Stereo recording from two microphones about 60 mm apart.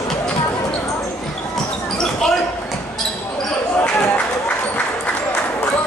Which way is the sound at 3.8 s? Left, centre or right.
Left.